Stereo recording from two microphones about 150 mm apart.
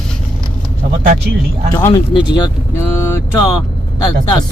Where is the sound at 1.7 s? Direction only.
25° left (ahead or behind).